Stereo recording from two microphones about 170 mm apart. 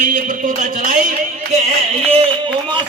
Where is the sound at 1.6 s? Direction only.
35° right (ahead or behind).